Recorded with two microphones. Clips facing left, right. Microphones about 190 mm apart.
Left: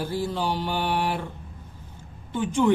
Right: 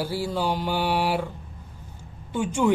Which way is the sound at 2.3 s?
10° right (ahead or behind).